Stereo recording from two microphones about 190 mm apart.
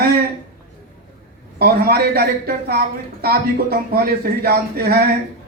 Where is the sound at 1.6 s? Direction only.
55° right (ahead or behind).